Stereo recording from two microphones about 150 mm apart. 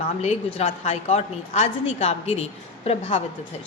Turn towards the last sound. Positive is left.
turn(degrees=40)  # may be behind; listen again after turning